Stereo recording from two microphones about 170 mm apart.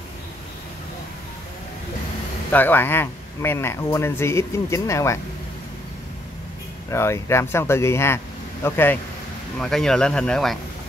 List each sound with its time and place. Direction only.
2.5 s speech: 10° left (ahead or behind)
6.9 s speech: 15° left (ahead or behind)